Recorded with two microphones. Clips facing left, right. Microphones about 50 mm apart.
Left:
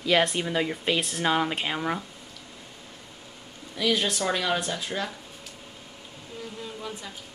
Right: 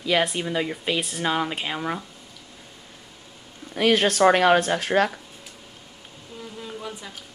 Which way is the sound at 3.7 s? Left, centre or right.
Right.